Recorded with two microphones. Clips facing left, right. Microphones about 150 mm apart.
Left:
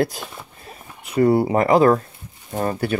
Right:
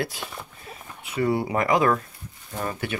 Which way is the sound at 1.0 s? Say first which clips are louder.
Left 8 dB; 40° left (ahead or behind).